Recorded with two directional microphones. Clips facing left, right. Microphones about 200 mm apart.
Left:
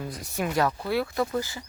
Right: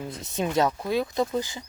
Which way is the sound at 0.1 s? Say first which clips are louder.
Right 3 dB; 20° right (ahead or behind).